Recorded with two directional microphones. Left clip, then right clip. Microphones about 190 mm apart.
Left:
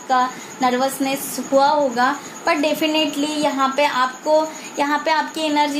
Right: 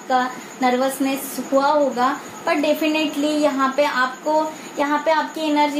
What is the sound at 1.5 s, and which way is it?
A woman's voice, 50° left (ahead or behind).